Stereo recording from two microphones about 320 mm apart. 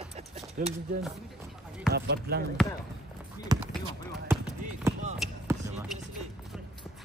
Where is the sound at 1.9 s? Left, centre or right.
Right.